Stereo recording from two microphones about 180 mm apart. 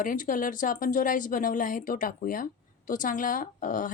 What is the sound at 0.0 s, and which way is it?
Speech, 50° left (ahead or behind).